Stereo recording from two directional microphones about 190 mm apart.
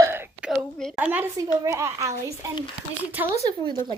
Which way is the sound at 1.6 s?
15° right (ahead or behind).